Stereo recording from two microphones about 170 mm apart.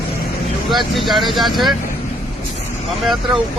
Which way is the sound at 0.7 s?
Centre (ahead or behind).